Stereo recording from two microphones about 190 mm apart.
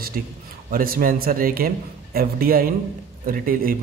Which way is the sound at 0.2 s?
45° right (ahead or behind).